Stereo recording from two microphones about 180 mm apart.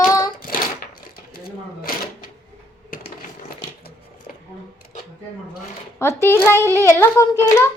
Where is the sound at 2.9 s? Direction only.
50° left (ahead or behind).